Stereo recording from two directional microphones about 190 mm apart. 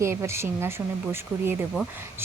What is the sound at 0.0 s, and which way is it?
Speech, 15° right (ahead or behind).